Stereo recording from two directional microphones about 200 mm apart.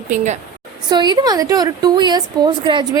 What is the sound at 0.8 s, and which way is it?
A woman's voice, 20° right (ahead or behind).